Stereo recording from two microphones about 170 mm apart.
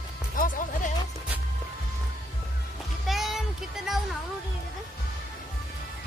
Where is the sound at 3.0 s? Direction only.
Centre (ahead or behind).